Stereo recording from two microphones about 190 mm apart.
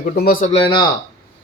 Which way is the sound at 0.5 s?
25° left (ahead or behind).